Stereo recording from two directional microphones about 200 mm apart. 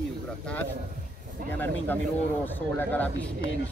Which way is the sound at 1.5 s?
10° left (ahead or behind).